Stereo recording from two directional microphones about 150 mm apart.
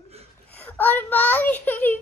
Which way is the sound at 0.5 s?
10° left (ahead or behind).